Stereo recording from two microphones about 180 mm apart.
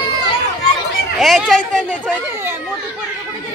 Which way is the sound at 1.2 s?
Centre (ahead or behind).